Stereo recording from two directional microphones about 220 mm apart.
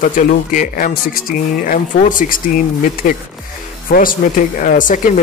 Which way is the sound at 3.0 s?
35° left (ahead or behind).